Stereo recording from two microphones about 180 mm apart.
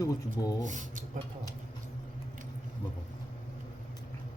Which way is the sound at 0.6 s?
45° right (ahead or behind).